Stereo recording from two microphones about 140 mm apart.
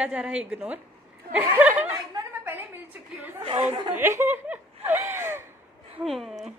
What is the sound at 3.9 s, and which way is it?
Speech, 20° right (ahead or behind).